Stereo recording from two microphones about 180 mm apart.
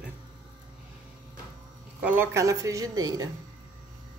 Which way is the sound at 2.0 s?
10° right (ahead or behind).